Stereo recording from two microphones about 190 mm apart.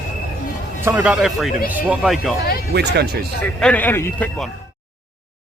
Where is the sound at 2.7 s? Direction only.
60° right (ahead or behind).